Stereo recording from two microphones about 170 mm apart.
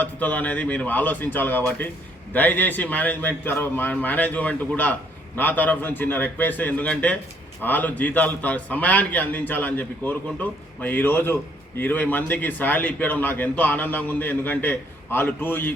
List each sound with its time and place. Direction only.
0.0 s a man's voice: 10° left (ahead or behind)